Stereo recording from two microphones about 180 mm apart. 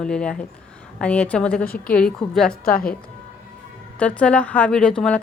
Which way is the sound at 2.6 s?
55° left (ahead or behind).